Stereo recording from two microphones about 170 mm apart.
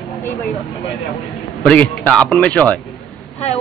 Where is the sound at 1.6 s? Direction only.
5° left (ahead or behind).